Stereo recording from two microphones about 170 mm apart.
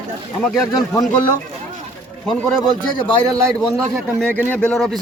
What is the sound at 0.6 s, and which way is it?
Speech, 20° left (ahead or behind).